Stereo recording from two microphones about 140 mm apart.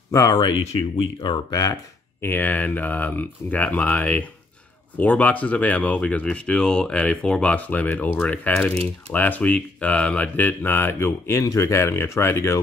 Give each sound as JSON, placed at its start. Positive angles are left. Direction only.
{"t": 0.1, "sound": "speech", "side_deg": 30}
{"t": 2.2, "sound": "speech", "side_deg": 15}